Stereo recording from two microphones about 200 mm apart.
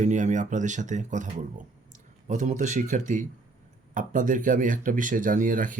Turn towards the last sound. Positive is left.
turn(degrees=-45)  # may be behind; listen again after turning